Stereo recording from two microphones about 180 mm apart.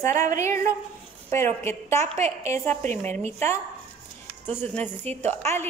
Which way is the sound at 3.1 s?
40° right (ahead or behind).